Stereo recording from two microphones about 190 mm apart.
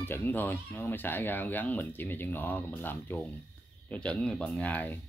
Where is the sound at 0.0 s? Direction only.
10° left (ahead or behind).